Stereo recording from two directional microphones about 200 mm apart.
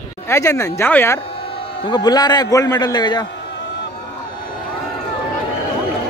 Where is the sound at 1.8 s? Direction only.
20° left (ahead or behind).